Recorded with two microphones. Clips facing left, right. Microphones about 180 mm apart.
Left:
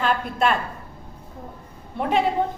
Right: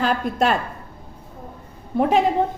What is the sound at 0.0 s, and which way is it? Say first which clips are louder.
Speech: right 2 dB; 40° right (ahead or behind).